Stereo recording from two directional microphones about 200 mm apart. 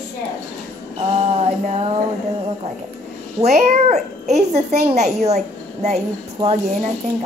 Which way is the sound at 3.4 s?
35° right (ahead or behind).